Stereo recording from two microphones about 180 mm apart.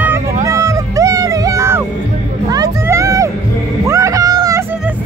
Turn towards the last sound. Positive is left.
turn(degrees=-20)  # may be behind; listen again after turning